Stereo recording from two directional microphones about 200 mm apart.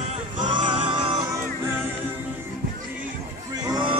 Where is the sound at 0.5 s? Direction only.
25° right (ahead or behind).